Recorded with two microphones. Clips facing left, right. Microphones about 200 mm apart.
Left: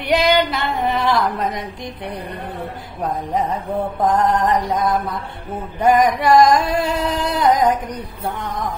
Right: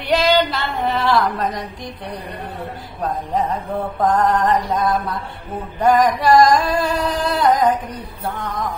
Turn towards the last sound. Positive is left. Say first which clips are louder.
# even
turn(degrees=20)  # may be behind; listen again after turning